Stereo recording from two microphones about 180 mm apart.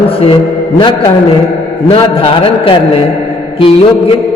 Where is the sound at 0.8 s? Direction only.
25° left (ahead or behind).